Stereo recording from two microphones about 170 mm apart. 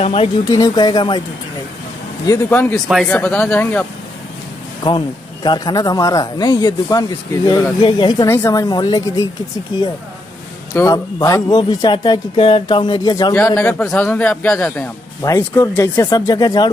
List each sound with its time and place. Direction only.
0.0 s speech: 35° left (ahead or behind)
0.5 s speech: 25° left (ahead or behind)
2.2 s a man's voice: 15° left (ahead or behind)
4.8 s speech: 25° left (ahead or behind)
8.3 s speech: 15° left (ahead or behind)
10.7 s speech: 20° left (ahead or behind)
13.3 s a man's voice: 10° left (ahead or behind)